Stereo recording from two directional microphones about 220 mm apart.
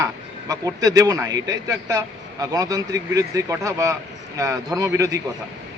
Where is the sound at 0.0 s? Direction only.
15° right (ahead or behind).